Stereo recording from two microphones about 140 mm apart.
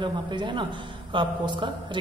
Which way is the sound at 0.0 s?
35° right (ahead or behind).